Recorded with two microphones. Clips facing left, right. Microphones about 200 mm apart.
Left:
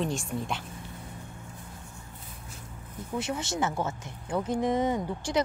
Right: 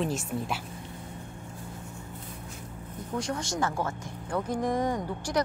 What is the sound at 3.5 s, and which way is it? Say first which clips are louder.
Speech: even; 25° left (ahead or behind).